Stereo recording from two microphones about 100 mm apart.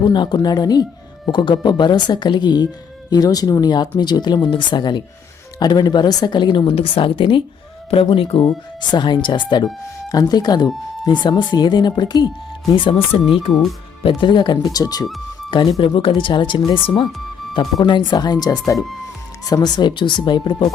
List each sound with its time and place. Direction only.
0.0 s speech: 50° left (ahead or behind)
6.7 s speech: 65° left (ahead or behind)
7.9 s speech: 75° left (ahead or behind)
8.9 s speech: 50° left (ahead or behind)
10.1 s speech: 40° left (ahead or behind)
12.7 s speech: 60° left (ahead or behind); by 15.0 s 40° left (ahead or behind)
15.4 s speech: 55° left (ahead or behind)
16.8 s speech: 60° left (ahead or behind)